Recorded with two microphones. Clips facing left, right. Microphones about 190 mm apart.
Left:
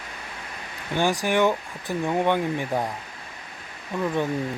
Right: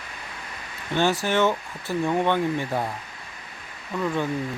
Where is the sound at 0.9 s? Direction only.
15° left (ahead or behind).